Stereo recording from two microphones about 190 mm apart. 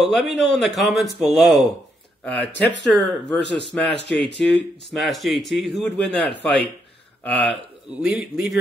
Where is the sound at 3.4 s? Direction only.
65° left (ahead or behind).